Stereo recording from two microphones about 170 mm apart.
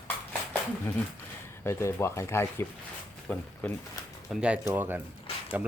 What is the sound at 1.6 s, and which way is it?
Speech, 15° left (ahead or behind).